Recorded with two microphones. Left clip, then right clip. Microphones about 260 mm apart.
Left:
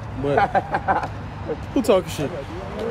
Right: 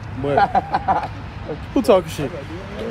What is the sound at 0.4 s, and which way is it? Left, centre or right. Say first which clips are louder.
Speech: right 3 dB; right.